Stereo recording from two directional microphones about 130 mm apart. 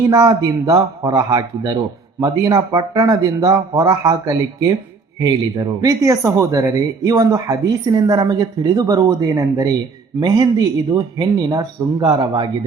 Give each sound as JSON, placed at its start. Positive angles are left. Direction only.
{"t": 0.1, "sound": "speech", "side_deg": -25}